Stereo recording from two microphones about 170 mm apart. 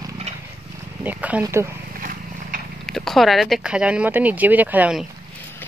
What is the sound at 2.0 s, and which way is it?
Vehicle, 55° right (ahead or behind).